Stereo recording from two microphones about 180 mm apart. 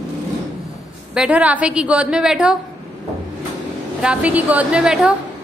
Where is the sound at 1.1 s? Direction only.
5° right (ahead or behind).